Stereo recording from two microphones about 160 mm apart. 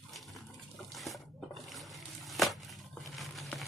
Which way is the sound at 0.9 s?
Centre (ahead or behind).